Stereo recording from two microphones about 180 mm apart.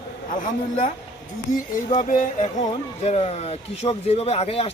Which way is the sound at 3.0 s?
35° left (ahead or behind).